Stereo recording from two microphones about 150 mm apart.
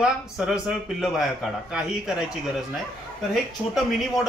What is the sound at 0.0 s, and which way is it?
Speech, 5° right (ahead or behind).